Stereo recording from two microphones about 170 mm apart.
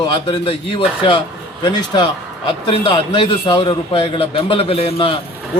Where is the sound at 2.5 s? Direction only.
30° left (ahead or behind).